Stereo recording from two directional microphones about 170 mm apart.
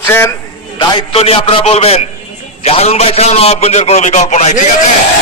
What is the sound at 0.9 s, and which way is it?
A man's voice, 35° left (ahead or behind).